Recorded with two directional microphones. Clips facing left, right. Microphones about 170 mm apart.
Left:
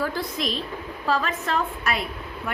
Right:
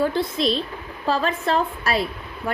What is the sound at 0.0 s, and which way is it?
A woman's voice, 25° right (ahead or behind).